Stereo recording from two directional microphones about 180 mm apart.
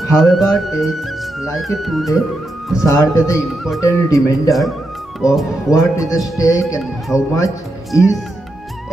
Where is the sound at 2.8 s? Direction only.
15° left (ahead or behind).